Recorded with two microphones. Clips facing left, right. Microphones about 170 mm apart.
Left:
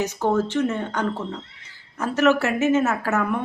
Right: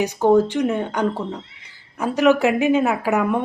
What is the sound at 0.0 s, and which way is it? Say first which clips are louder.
Speech: right 6 dB; 15° right (ahead or behind).